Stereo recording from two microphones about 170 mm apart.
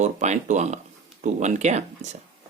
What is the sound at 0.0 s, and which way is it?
Speech, 45° right (ahead or behind).